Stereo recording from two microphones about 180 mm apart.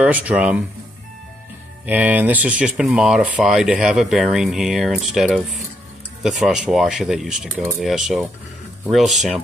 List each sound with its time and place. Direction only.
0.0 s speech: 10° right (ahead or behind)
1.9 s speech: 10° right (ahead or behind)